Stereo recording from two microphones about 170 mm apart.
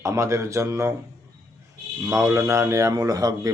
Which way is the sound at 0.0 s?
15° right (ahead or behind).